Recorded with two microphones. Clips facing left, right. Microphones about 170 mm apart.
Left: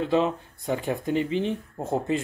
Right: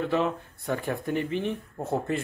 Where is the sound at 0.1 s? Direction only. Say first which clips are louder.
Left 3 dB; 20° left (ahead or behind).